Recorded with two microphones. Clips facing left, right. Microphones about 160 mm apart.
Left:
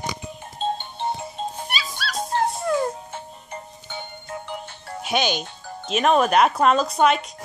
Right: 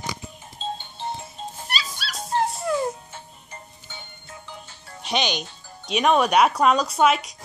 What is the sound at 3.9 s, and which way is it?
Music, 60° left (ahead or behind).